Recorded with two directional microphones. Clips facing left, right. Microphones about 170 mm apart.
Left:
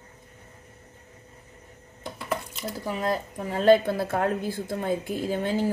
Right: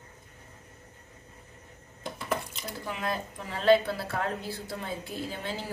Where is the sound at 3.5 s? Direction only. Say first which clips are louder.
Left 4 dB; 50° left (ahead or behind).